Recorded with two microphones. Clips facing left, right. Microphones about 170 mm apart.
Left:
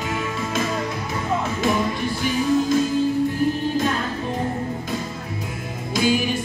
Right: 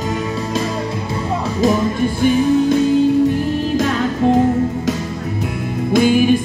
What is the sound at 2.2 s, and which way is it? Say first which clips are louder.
Music: right 7 dB; 55° right (ahead or behind).